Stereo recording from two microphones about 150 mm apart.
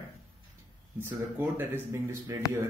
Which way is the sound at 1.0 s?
15° right (ahead or behind).